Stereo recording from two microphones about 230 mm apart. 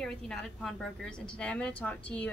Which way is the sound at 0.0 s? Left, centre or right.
Centre.